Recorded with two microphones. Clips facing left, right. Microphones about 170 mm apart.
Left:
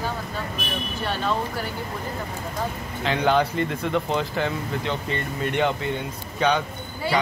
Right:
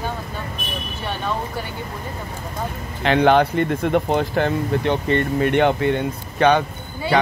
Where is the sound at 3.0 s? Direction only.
65° right (ahead or behind).